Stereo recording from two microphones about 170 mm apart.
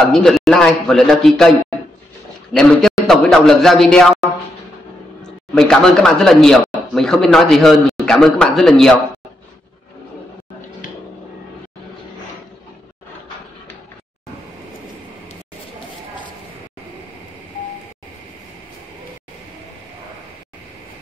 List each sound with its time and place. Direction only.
0.0 s a man's voice: centre (ahead or behind)
2.5 s a man's voice: centre (ahead or behind)
10.8 s a sound: 50° left (ahead or behind)